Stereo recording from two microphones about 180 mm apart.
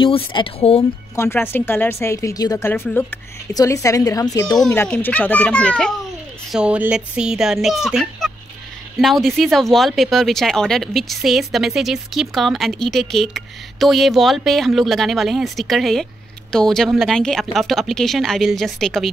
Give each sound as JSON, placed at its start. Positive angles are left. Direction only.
{"t": 0.0, "sound": "speech", "side_deg": 30}
{"t": 1.1, "sound": "a woman's voice", "side_deg": 15}
{"t": 4.8, "sound": "a woman's voice", "side_deg": 10}
{"t": 6.5, "sound": "speech", "side_deg": -5}